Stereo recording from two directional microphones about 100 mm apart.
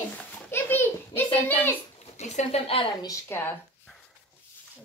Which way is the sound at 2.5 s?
75° left (ahead or behind).